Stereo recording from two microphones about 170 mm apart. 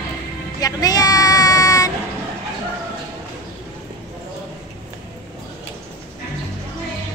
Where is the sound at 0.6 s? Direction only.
20° left (ahead or behind).